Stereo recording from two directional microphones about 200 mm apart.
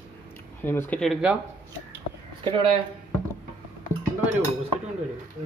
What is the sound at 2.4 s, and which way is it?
Speech, 25° right (ahead or behind).